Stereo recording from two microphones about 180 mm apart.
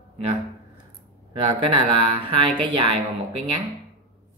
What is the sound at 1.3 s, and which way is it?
Speech, 30° right (ahead or behind).